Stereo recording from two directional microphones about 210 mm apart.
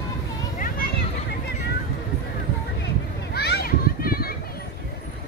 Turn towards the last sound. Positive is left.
turn(degrees=45)  # may be behind; listen again after turning